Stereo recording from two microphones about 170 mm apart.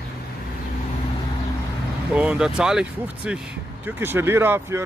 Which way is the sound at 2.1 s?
5° right (ahead or behind).